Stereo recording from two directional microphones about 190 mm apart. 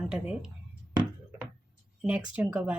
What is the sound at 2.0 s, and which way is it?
Speech, 5° right (ahead or behind).